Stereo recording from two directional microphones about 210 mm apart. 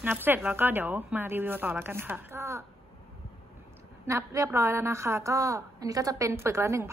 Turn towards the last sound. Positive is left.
turn(degrees=-15)  # may be behind; listen again after turning